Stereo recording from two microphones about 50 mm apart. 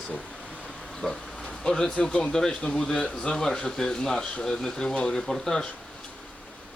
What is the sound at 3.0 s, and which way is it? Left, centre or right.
Speech, left.